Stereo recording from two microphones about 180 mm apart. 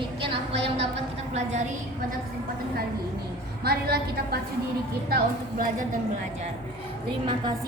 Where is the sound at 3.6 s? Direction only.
60° right (ahead or behind).